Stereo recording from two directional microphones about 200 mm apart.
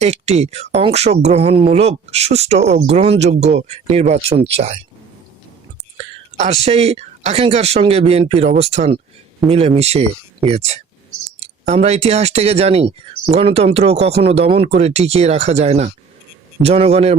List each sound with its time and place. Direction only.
0.0 s speech: 35° right (ahead or behind)
6.7 s speech: 30° right (ahead or behind)